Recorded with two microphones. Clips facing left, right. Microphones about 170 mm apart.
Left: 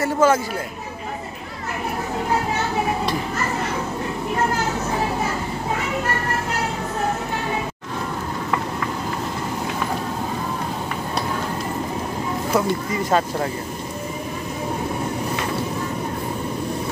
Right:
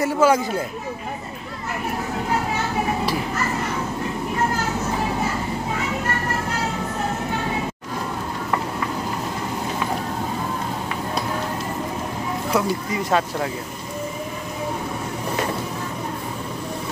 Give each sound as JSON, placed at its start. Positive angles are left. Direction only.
{"t": 0.0, "sound": "speech", "side_deg": -15}
{"t": 12.5, "sound": "speech", "side_deg": 0}